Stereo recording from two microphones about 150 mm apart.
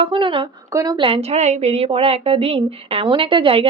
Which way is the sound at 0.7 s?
20° right (ahead or behind).